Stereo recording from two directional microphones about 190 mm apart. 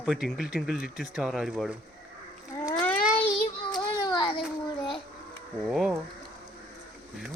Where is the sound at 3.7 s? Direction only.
20° left (ahead or behind).